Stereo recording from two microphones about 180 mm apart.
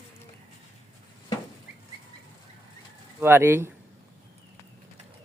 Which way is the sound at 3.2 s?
10° right (ahead or behind).